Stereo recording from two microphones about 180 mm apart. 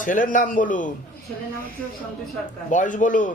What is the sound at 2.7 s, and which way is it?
Speech, 45° left (ahead or behind).